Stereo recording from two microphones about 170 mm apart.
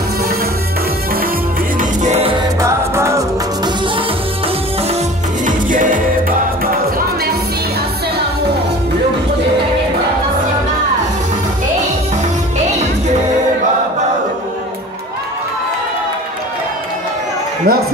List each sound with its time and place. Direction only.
1.8 s music: 45° right (ahead or behind)
2.6 s music: 15° right (ahead or behind)
5.4 s music: 50° right (ahead or behind)
17.7 s a sound: 65° right (ahead or behind)